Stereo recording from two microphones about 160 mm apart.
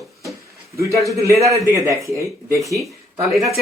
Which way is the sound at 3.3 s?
Centre (ahead or behind).